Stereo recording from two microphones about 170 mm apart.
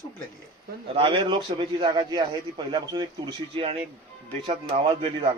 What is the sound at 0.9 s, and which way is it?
A man's voice, 30° right (ahead or behind).